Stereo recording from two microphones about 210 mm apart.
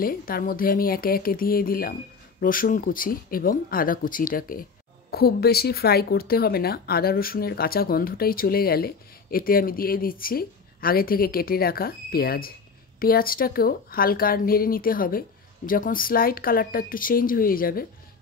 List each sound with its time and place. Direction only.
0.0 s speech: 45° left (ahead or behind)